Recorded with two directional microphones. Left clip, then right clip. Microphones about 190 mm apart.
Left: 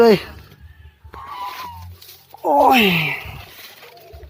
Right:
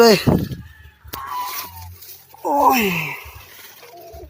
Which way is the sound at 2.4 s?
15° left (ahead or behind).